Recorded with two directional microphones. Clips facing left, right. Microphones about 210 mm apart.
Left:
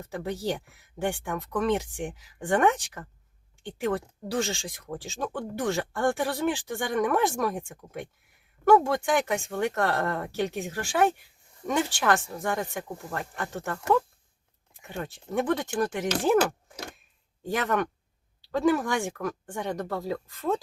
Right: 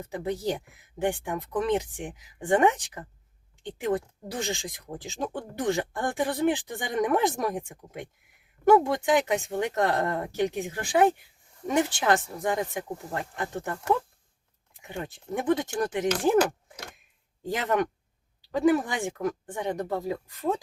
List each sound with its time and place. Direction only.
0.0 s speech: 15° right (ahead or behind)
15.4 s speech: 20° right (ahead or behind)
17.5 s speech: 20° right (ahead or behind)